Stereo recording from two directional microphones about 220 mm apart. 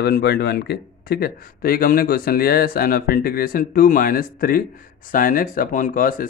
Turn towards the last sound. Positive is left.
turn(degrees=40)  # may be behind; listen again after turning